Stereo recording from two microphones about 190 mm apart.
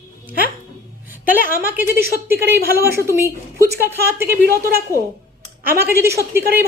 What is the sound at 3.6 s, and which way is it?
Speech, 55° right (ahead or behind).